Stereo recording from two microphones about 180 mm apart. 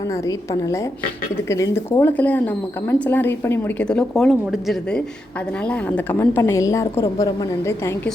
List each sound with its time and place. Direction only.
0.1 s a woman's voice: 20° left (ahead or behind)